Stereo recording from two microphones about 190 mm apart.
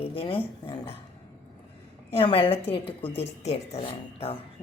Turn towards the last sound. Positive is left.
turn(degrees=30)  # may be behind; listen again after turning